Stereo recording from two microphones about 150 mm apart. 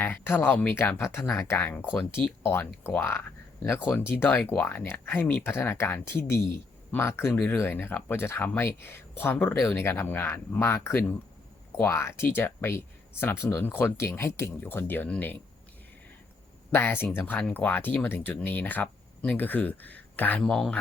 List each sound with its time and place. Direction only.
0.0 s speech: 15° left (ahead or behind)
16.7 s speech: 15° left (ahead or behind)